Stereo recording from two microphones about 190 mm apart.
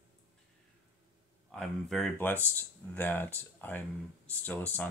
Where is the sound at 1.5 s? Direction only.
5° left (ahead or behind).